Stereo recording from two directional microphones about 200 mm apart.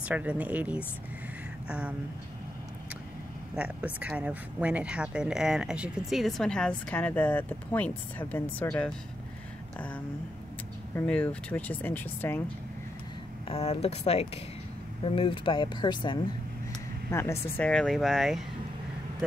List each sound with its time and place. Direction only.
0.0 s speech: 5° right (ahead or behind)
3.5 s speech: 5° right (ahead or behind); by 12.4 s 10° left (ahead or behind)
13.5 s speech: 30° left (ahead or behind); by 18.4 s centre (ahead or behind)